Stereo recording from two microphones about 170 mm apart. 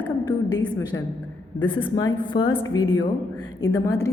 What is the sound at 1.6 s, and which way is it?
A woman's voice, 30° left (ahead or behind).